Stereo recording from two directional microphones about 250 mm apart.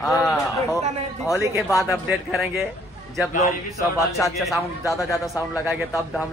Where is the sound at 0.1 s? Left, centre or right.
Centre.